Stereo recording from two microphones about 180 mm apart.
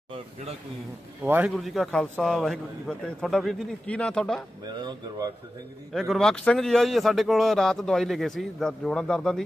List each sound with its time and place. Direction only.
1.2 s a man's voice: 10° right (ahead or behind)
4.6 s speech: 25° right (ahead or behind)
5.9 s a man's voice: centre (ahead or behind)